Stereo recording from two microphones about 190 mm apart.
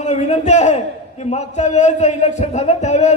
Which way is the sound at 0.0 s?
35° left (ahead or behind).